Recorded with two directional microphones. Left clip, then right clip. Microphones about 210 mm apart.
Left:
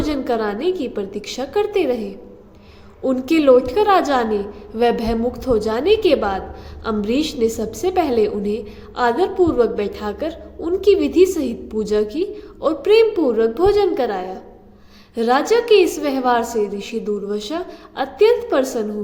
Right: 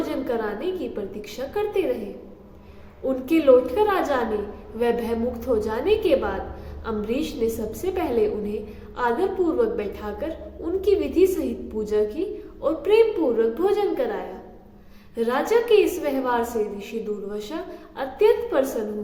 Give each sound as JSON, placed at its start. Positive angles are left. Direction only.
{"t": 0.0, "sound": "a woman's voice", "side_deg": 45}
{"t": 3.1, "sound": "a woman's voice", "side_deg": 45}